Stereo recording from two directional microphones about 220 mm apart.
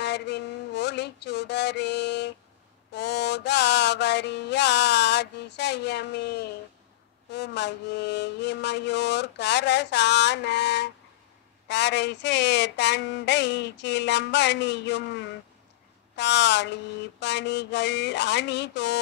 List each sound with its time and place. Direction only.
0.0 s a sound: 50° left (ahead or behind)
2.9 s music: 50° left (ahead or behind)
7.2 s mantra: 50° left (ahead or behind)